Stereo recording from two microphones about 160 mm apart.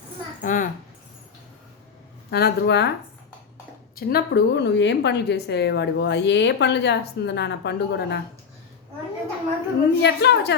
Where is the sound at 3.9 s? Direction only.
75° left (ahead or behind).